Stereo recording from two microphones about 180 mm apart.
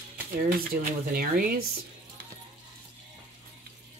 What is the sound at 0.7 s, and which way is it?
Speech, 55° right (ahead or behind).